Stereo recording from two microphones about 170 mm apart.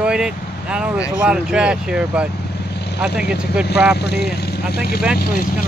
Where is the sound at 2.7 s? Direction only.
75° left (ahead or behind).